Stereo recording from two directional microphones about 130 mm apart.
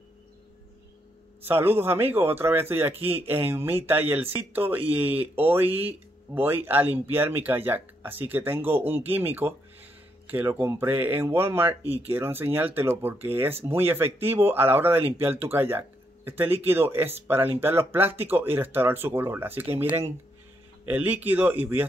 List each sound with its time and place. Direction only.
1.4 s speech: 15° right (ahead or behind)